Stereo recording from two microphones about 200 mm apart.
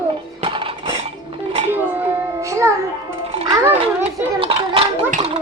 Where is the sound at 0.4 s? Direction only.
25° right (ahead or behind).